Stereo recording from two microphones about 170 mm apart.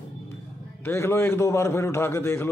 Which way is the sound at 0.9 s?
15° left (ahead or behind).